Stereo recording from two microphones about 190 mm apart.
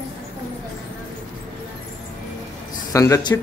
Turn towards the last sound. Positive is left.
turn(degrees=20)  # may be behind; listen again after turning